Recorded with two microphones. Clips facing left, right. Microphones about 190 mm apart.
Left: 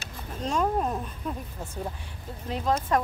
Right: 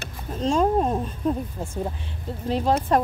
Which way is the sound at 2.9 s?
30° right (ahead or behind).